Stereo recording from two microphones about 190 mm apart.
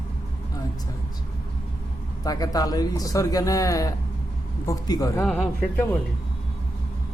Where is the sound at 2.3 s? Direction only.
20° left (ahead or behind).